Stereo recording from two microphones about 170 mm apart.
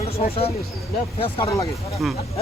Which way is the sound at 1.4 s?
20° left (ahead or behind).